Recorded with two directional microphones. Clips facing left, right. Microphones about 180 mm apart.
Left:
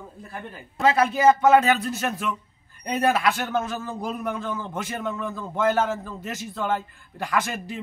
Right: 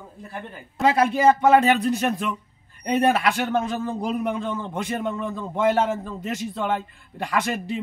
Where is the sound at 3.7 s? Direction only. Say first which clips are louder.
Right 4 dB; 30° right (ahead or behind).